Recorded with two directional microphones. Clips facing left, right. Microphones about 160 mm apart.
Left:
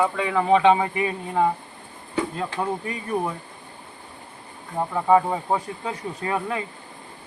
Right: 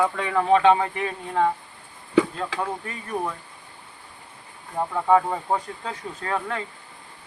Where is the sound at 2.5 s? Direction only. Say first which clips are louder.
Even; 90° right.